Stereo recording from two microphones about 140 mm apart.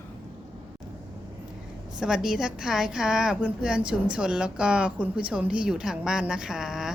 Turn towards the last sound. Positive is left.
turn(degrees=-5)  # may be behind; listen again after turning